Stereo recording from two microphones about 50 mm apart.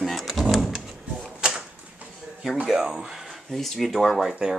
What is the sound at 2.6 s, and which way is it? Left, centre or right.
Speech, centre.